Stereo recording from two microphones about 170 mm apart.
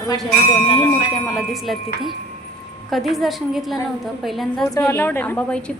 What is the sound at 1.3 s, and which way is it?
Speech, centre (ahead or behind).